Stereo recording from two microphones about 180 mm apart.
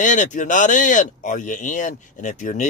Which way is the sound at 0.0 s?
40° left (ahead or behind).